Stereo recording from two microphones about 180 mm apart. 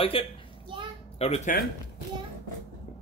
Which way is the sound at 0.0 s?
30° left (ahead or behind).